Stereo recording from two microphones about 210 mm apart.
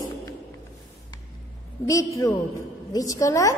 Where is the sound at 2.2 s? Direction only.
15° left (ahead or behind).